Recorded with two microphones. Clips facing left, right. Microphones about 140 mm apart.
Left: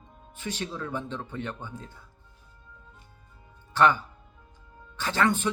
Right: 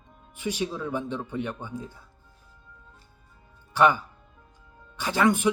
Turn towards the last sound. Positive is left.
turn(degrees=-10)  # may be behind; listen again after turning